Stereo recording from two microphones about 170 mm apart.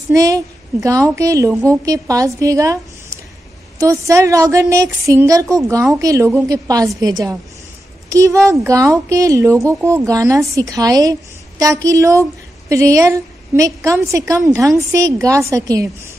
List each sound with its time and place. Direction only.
0.1 s a woman's voice: 20° right (ahead or behind)
3.8 s a woman's voice: 15° right (ahead or behind)